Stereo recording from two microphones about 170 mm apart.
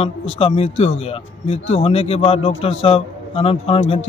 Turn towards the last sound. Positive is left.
turn(degrees=35)  # may be behind; listen again after turning